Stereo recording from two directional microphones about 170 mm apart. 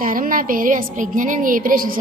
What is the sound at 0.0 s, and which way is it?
A woman's voice, 55° right (ahead or behind).